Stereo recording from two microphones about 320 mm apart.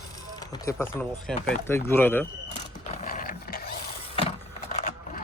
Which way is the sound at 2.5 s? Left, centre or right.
Left.